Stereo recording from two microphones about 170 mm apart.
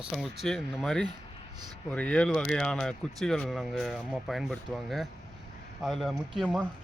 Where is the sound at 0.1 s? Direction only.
Centre (ahead or behind).